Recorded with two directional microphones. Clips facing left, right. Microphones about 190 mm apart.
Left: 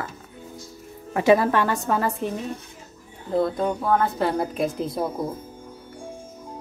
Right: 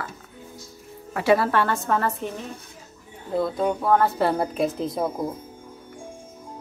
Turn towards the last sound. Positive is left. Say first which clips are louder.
# right 1 dB
turn(degrees=0)  # may be behind; listen again after turning